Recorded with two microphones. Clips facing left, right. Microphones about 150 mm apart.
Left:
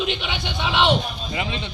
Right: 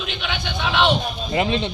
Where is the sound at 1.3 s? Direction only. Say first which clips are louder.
Right 8 dB; 45° right (ahead or behind).